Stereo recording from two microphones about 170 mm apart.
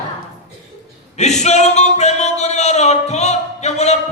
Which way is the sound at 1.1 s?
40° left (ahead or behind).